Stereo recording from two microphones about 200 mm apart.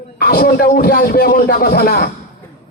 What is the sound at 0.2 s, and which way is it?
A man's voice, 50° left (ahead or behind).